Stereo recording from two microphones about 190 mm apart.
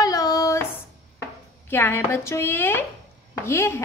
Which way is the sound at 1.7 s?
10° left (ahead or behind).